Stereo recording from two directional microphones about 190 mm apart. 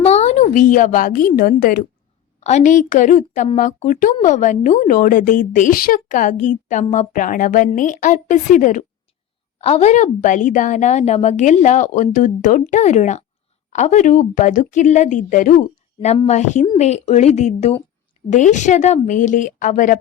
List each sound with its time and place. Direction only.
0.0 s a woman's voice: 35° left (ahead or behind); by 1.8 s 50° left (ahead or behind)
2.4 s speech: 35° left (ahead or behind)